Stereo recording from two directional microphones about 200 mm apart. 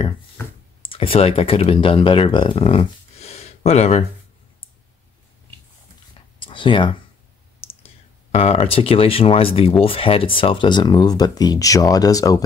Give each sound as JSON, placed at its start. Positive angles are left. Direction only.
{"t": 0.4, "sound": "a sound", "side_deg": 10}
{"t": 0.8, "sound": "speech", "side_deg": 25}
{"t": 6.4, "sound": "speech", "side_deg": 25}